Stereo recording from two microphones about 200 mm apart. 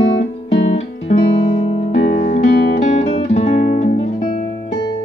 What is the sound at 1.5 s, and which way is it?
Music, 30° left (ahead or behind).